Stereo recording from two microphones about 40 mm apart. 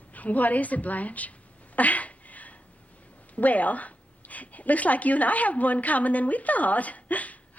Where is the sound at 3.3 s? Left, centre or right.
Left.